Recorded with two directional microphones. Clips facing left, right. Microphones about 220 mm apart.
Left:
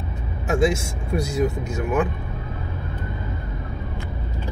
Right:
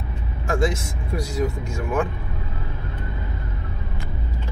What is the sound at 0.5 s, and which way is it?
Speech, 25° left (ahead or behind).